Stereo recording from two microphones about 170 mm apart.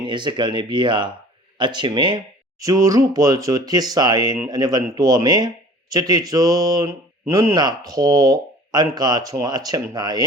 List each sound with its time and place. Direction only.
0.0 s speech: 25° right (ahead or behind)